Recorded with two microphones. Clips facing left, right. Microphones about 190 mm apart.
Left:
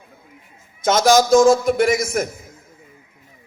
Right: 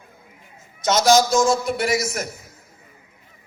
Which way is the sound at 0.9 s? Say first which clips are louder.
Left 3 dB; 50° left (ahead or behind).